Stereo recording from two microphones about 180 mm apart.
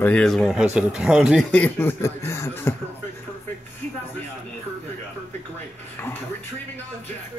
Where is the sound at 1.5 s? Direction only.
10° left (ahead or behind).